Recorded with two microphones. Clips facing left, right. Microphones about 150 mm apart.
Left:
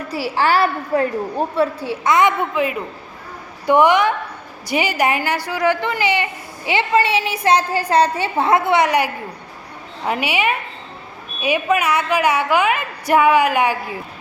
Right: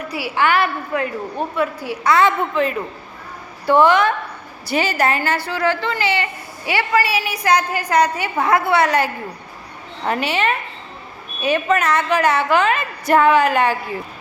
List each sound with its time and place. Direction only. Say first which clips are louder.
0.1 s a woman's voice: left 1 dB; 35° left (ahead or behind); by 9.0 s 15° left (ahead or behind)
10.1 s a woman's voice: even; 10° left (ahead or behind)